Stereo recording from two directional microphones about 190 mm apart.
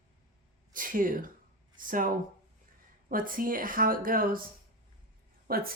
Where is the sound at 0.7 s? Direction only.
45° right (ahead or behind).